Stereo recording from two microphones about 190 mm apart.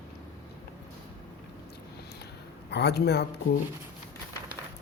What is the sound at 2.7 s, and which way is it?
Speech, 60° left (ahead or behind).